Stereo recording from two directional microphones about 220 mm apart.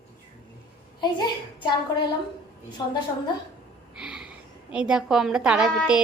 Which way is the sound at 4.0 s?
5° right (ahead or behind).